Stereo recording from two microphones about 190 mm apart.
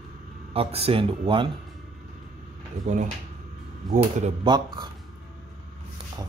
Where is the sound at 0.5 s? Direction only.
30° right (ahead or behind).